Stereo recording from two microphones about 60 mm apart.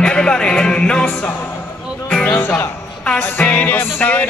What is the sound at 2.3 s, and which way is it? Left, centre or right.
Music, left.